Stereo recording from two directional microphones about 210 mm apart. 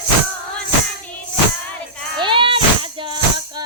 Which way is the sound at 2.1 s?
25° right (ahead or behind).